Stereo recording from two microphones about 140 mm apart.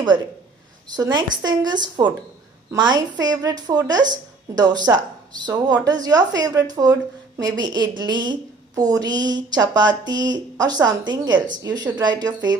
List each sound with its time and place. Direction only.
0.9 s a woman's voice: 30° right (ahead or behind)